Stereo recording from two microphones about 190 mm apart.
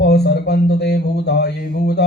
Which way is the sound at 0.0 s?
60° left (ahead or behind).